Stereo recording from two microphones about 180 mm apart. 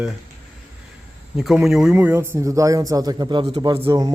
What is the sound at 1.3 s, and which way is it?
A man's voice, centre (ahead or behind).